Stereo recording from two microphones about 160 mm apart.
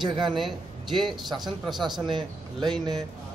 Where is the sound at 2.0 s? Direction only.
30° right (ahead or behind).